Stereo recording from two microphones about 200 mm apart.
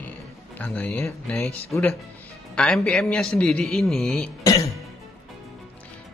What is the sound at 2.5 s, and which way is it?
Speech, 5° left (ahead or behind).